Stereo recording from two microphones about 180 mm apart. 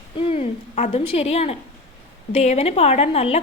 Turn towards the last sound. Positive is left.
turn(degrees=35)  # may be behind; listen again after turning